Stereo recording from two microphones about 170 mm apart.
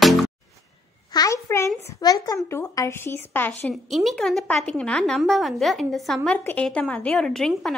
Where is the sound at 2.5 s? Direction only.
15° left (ahead or behind).